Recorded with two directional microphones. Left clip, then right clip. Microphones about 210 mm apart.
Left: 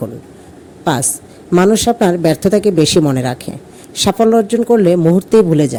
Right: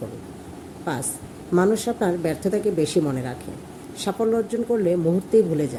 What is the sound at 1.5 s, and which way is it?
Speech, 40° left (ahead or behind).